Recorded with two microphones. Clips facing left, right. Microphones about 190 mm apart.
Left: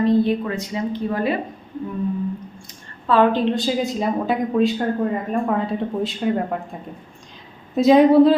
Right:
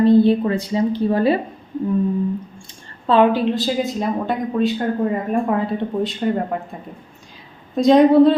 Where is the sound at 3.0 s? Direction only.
25° right (ahead or behind).